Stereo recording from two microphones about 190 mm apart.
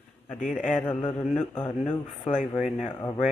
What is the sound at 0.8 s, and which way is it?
Speech, 30° left (ahead or behind).